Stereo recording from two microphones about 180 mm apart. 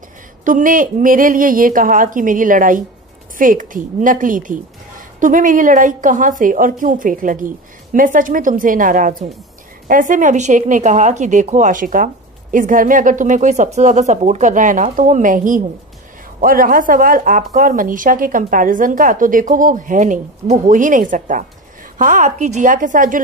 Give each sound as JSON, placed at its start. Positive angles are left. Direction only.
{"t": 0.5, "sound": "a woman's voice", "side_deg": -50}